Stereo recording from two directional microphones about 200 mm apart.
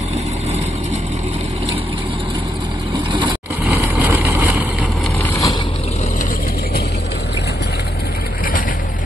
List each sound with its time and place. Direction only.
3.1 s vehicle: 20° right (ahead or behind)
5.2 s boat: 15° left (ahead or behind)